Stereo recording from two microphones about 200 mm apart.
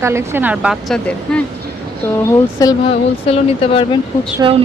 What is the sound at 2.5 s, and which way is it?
Speech, 20° left (ahead or behind).